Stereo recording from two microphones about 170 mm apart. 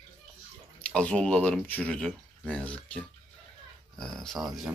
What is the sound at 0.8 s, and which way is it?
Speech, 5° left (ahead or behind).